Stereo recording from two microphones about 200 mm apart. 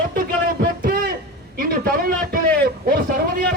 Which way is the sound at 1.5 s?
45° right (ahead or behind).